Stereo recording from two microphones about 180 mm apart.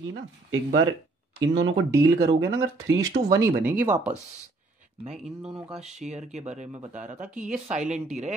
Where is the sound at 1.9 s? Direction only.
15° right (ahead or behind).